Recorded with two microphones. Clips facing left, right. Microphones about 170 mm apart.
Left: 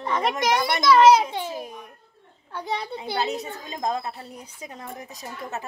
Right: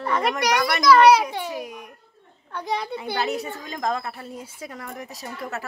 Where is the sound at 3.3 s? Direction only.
20° left (ahead or behind).